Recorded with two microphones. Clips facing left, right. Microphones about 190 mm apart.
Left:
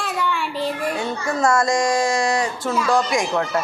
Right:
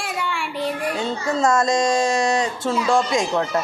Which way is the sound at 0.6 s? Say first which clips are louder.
Right 1 dB; 20° right (ahead or behind).